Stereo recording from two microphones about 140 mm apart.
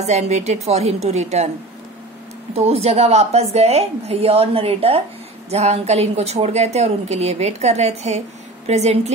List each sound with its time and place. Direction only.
0.0 s a woman's voice: 55° right (ahead or behind)
2.5 s a woman's voice: 45° right (ahead or behind)